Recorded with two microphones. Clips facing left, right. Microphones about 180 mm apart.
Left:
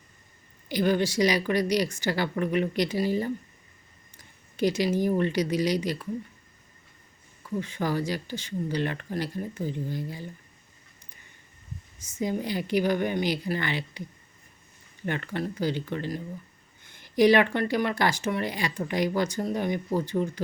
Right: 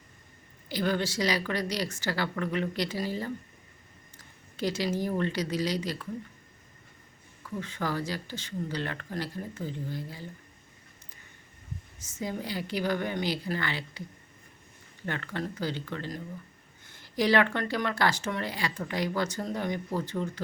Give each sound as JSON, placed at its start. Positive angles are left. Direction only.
{"t": 0.7, "sound": "speech", "side_deg": 15}
{"t": 4.5, "sound": "speech", "side_deg": 15}
{"t": 7.6, "sound": "speech", "side_deg": 15}
{"t": 11.9, "sound": "speech", "side_deg": 15}
{"t": 15.0, "sound": "speech", "side_deg": 15}